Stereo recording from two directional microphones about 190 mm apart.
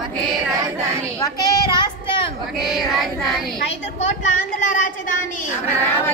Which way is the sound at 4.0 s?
40° left (ahead or behind).